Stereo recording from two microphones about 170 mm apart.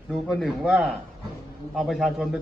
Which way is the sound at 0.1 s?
Centre (ahead or behind).